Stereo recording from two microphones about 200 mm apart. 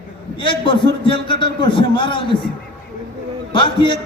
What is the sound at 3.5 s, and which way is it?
Speech, 25° left (ahead or behind).